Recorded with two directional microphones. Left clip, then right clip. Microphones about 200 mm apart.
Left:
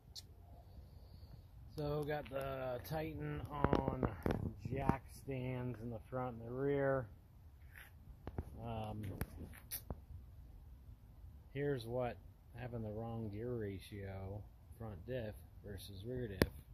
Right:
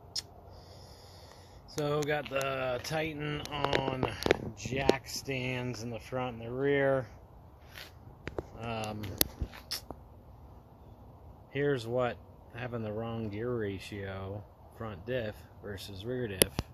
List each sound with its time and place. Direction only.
1.8 s speech: centre (ahead or behind)
4.3 s speech: 30° left (ahead or behind)
8.6 s speech: 15° left (ahead or behind)
9.5 s a sound: 5° left (ahead or behind)
11.5 s speech: centre (ahead or behind)